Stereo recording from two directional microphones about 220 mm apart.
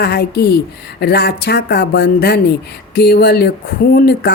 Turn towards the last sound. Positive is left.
turn(degrees=45)  # may be behind; listen again after turning